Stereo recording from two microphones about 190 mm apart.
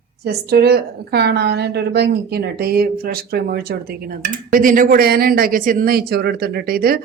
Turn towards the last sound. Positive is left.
turn(degrees=-50)  # may be behind; listen again after turning